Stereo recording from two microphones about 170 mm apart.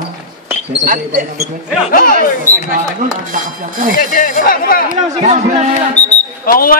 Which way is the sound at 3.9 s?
50° left (ahead or behind).